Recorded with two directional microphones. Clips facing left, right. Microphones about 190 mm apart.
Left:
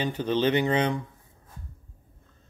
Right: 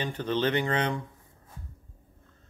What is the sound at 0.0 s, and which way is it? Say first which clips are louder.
Speech: left 3 dB; 15° left (ahead or behind).